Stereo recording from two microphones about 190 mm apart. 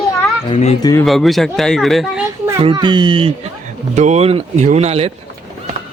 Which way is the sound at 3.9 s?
40° right (ahead or behind).